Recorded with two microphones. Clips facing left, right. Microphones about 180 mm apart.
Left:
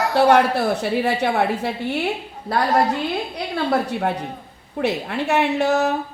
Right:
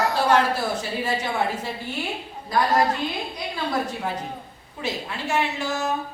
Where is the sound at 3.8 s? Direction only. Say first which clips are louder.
Left 5 dB; 65° left (ahead or behind).